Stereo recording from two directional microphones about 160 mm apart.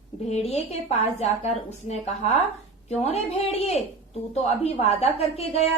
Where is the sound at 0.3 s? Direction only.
40° left (ahead or behind).